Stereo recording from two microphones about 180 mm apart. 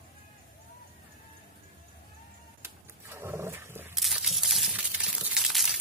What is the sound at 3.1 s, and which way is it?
Wild animals, 15° right (ahead or behind).